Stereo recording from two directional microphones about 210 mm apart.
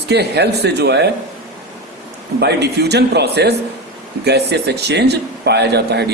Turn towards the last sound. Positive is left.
turn(degrees=-55)  # may be behind; listen again after turning